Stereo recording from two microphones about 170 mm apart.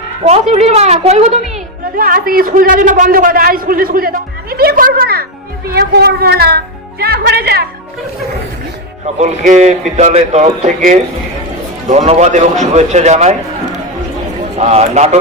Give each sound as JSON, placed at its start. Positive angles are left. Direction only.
{"t": 0.3, "sound": "a woman's voice", "side_deg": -40}
{"t": 2.0, "sound": "a man's voice", "side_deg": -55}
{"t": 9.1, "sound": "a man's voice", "side_deg": -45}
{"t": 14.6, "sound": "a woman's voice", "side_deg": -40}